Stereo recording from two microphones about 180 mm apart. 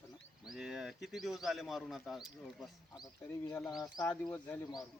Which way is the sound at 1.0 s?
Centre (ahead or behind).